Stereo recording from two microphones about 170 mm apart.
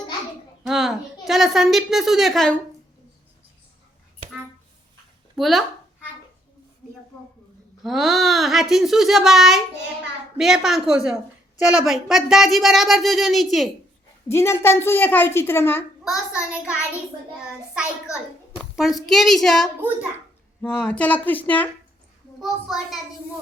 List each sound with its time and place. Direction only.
0.7 s a sound: centre (ahead or behind)
1.3 s speech: centre (ahead or behind)
5.4 s speech: centre (ahead or behind)
7.9 s speech: centre (ahead or behind)
14.3 s a woman's voice: 15° left (ahead or behind)
16.0 s a child's voice: 5° right (ahead or behind)
17.7 s a woman's voice: 5° right (ahead or behind); by 21.7 s 10° left (ahead or behind)
22.4 s speech: centre (ahead or behind)